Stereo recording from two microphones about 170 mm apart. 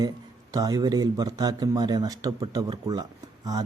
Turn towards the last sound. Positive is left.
turn(degrees=-25)  # may be behind; listen again after turning